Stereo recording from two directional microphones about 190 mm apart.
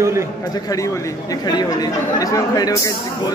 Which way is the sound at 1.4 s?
20° left (ahead or behind).